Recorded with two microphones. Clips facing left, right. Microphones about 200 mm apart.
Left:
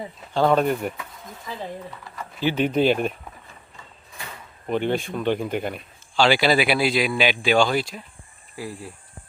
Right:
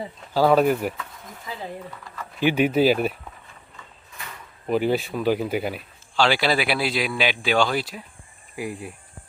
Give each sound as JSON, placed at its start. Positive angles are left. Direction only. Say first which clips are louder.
{"t": 0.3, "sound": "speech", "louder": "right 2 dB", "side_deg": -5}
{"t": 2.4, "sound": "speech", "louder": "right 2 dB", "side_deg": -10}
{"t": 4.7, "sound": "speech", "louder": "right 2 dB", "side_deg": -5}
{"t": 8.5, "sound": "speech", "louder": "right 3 dB", "side_deg": -15}